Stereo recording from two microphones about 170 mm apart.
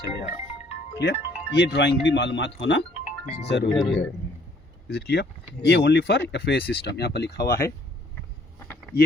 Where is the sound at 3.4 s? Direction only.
80° left.